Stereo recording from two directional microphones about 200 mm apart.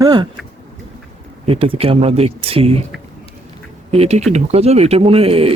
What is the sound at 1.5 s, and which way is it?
Speech, 30° right (ahead or behind).